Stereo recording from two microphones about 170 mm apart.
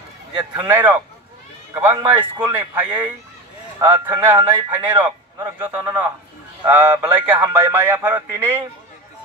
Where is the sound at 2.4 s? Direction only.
10° right (ahead or behind).